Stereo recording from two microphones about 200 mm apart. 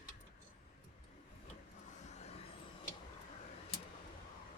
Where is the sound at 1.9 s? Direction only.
35° left (ahead or behind).